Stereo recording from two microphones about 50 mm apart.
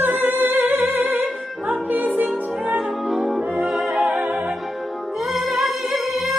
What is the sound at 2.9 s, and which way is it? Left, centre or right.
Music, centre.